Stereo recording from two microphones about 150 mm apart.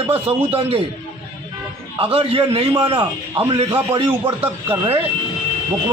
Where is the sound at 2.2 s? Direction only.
40° right (ahead or behind).